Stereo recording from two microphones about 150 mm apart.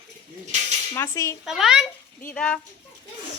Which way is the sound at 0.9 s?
20° left (ahead or behind).